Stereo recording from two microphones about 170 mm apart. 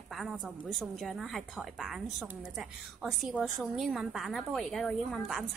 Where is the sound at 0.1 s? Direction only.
Centre (ahead or behind).